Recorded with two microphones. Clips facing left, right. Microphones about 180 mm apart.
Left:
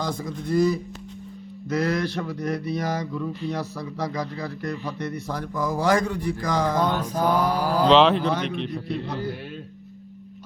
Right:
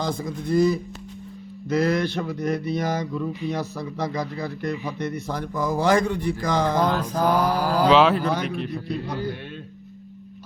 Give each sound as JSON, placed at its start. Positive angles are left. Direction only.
{"t": 0.0, "sound": "a man's voice", "side_deg": -25}
{"t": 2.0, "sound": "a man's voice", "side_deg": -25}
{"t": 6.8, "sound": "mantra", "side_deg": -90}
{"t": 7.9, "sound": "a man's voice", "side_deg": -5}